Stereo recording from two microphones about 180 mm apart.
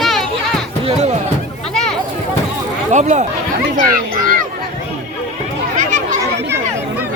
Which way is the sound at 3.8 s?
50° right (ahead or behind).